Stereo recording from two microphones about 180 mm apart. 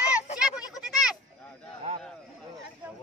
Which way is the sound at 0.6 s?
5° right (ahead or behind).